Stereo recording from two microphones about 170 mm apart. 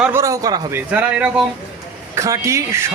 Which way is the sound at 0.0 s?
15° right (ahead or behind).